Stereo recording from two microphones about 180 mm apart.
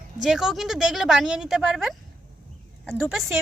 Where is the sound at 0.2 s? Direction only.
5° right (ahead or behind).